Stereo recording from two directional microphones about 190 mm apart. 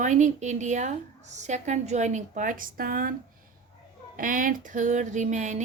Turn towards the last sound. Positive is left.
turn(degrees=-40)  # may be behind; listen again after turning